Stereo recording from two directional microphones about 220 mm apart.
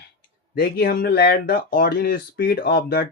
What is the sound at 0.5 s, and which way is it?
Speech, 45° left (ahead or behind).